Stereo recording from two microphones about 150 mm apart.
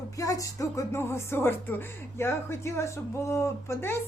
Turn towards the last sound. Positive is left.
turn(degrees=15)  # may be behind; listen again after turning